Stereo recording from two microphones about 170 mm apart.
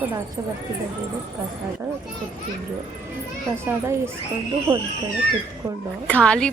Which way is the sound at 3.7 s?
15° right (ahead or behind).